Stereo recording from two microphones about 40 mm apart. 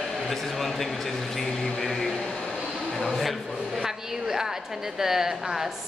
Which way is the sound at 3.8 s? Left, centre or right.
Centre.